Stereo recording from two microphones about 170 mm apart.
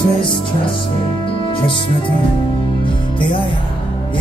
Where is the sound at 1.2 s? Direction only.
30° left (ahead or behind).